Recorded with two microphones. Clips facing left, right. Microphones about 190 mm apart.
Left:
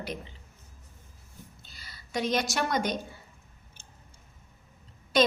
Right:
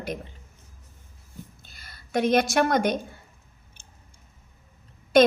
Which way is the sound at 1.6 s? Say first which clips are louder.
Right 1 dB; 50° right (ahead or behind).